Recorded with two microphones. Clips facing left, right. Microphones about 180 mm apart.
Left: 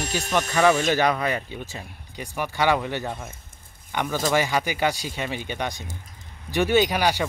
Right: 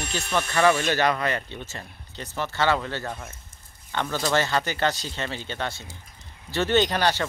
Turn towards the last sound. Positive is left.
turn(degrees=10)  # may be behind; listen again after turning